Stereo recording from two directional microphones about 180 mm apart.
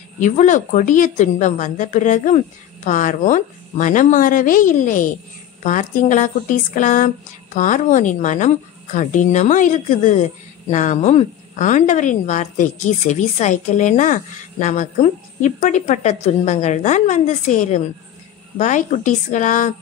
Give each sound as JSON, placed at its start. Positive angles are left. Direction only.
{"t": 0.2, "sound": "a woman's voice", "side_deg": 45}